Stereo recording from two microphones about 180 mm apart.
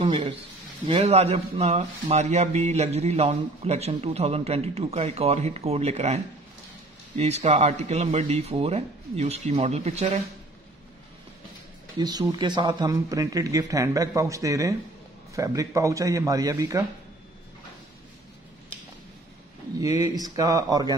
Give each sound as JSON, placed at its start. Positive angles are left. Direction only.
{"t": 0.0, "sound": "a sound", "side_deg": -35}
{"t": 0.8, "sound": "speech", "side_deg": -35}
{"t": 12.0, "sound": "speech", "side_deg": -20}
{"t": 19.8, "sound": "speech", "side_deg": -20}